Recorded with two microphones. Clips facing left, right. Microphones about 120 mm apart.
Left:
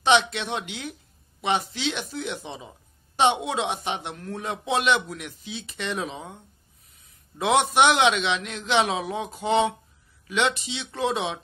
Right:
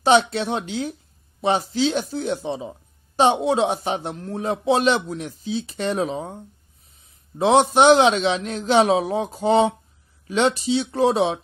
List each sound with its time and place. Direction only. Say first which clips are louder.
0.0 s speech: right 4 dB; 40° right (ahead or behind)